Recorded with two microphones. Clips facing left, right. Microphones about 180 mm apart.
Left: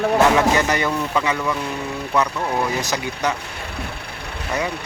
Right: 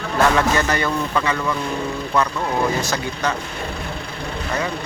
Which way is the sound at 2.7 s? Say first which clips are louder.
Right 1 dB; 15° left (ahead or behind).